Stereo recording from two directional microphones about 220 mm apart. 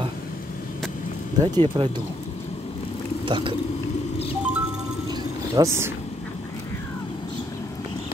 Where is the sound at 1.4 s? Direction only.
20° right (ahead or behind).